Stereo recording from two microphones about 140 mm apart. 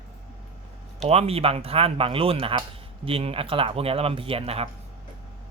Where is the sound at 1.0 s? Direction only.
45° right (ahead or behind).